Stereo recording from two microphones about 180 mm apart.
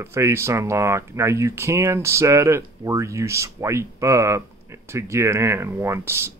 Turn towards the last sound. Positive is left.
turn(degrees=-15)  # may be behind; listen again after turning